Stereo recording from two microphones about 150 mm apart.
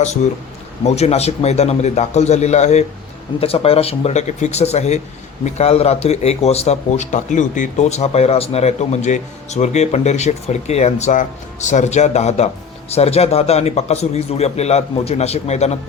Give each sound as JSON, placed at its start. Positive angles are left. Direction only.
{"t": 0.9, "sound": "speech", "side_deg": 45}